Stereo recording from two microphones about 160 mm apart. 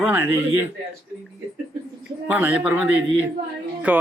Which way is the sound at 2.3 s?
10° right (ahead or behind).